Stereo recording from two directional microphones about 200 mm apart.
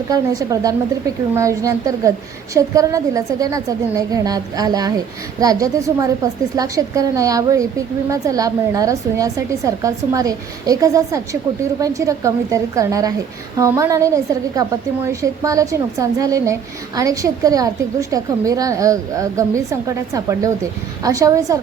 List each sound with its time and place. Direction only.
0.1 s a woman's voice: 20° right (ahead or behind)